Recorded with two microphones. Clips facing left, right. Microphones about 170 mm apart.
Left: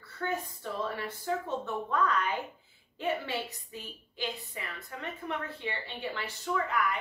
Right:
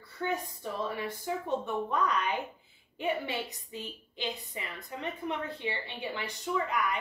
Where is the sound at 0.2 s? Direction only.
15° right (ahead or behind).